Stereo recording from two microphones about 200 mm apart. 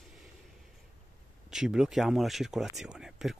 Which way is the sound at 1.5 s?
5° right (ahead or behind).